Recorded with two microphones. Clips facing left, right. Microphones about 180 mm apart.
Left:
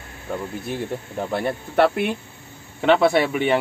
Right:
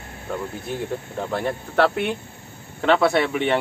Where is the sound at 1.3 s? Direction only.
5° left (ahead or behind).